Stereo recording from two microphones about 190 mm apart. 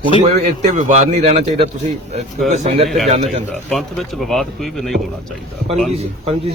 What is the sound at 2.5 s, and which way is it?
Speech, 35° right (ahead or behind).